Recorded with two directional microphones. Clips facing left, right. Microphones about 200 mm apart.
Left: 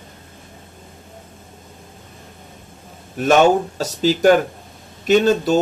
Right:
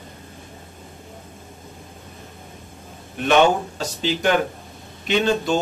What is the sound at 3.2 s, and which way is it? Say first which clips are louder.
Speech: left 3 dB; 40° left (ahead or behind).